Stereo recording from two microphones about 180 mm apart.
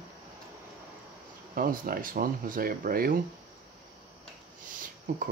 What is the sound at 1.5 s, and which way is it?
Speech, 50° right (ahead or behind).